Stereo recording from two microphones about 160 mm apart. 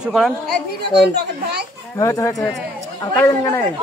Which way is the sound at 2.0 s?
20° left (ahead or behind).